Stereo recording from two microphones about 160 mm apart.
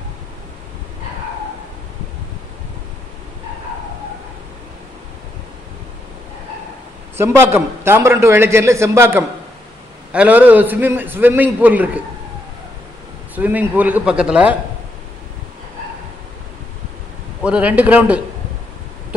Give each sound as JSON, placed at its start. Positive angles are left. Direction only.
{"t": 7.2, "sound": "a man's voice", "side_deg": -15}
{"t": 13.3, "sound": "a man's voice", "side_deg": -10}
{"t": 17.4, "sound": "a man's voice", "side_deg": -10}